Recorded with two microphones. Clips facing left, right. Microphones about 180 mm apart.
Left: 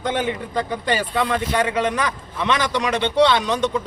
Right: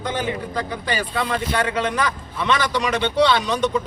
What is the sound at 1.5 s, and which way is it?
Speech, 15° left (ahead or behind).